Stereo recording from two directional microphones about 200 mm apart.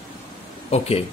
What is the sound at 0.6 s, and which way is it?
Speech, 30° left (ahead or behind).